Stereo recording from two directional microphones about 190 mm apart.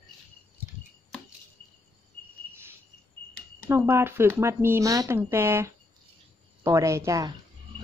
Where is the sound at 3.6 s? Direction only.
15° right (ahead or behind).